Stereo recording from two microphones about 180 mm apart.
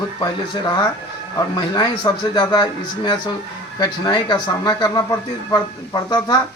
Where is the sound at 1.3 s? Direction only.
20° left (ahead or behind).